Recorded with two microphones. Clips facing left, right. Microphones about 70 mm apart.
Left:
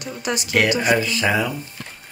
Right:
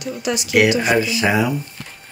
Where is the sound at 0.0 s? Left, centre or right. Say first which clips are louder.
Right 3 dB; left.